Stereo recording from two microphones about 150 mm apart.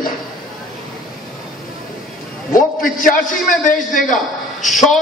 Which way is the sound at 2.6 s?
65° left (ahead or behind).